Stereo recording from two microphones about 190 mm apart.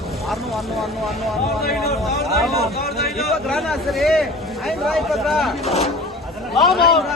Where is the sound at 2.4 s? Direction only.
Centre (ahead or behind).